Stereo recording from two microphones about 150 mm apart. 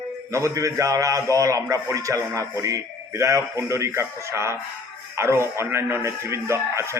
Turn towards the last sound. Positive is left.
turn(degrees=-20)  # may be behind; listen again after turning